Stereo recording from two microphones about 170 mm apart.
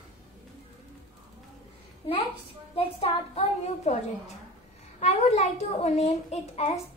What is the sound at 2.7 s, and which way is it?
A woman's voice, 35° left (ahead or behind).